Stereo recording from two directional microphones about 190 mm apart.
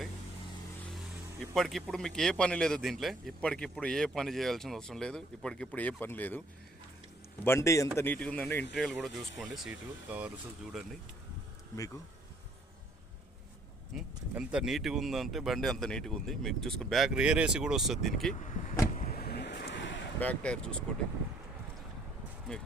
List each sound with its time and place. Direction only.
1.5 s speech: centre (ahead or behind)
7.4 s a man's voice: 15° left (ahead or behind); by 10.8 s 5° right (ahead or behind)
13.9 s speech: 5° right (ahead or behind)
18.3 s speech: 40° left (ahead or behind)
18.9 s vehicle: 50° left (ahead or behind); by 20.0 s 70° left (ahead or behind)
20.1 s speech: 5° left (ahead or behind)
22.5 s speech: 5° left (ahead or behind)